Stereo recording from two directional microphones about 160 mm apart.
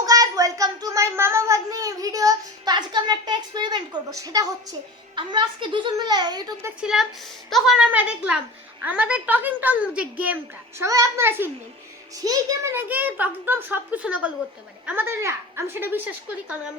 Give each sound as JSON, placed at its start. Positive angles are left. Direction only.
{"t": 0.0, "sound": "a sound", "side_deg": -20}
{"t": 5.1, "sound": "a child's voice", "side_deg": -30}
{"t": 6.8, "sound": "a woman's voice", "side_deg": 0}
{"t": 10.8, "sound": "a child's voice", "side_deg": -20}